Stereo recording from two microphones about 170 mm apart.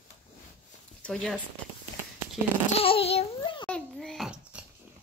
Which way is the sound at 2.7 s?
35° left (ahead or behind).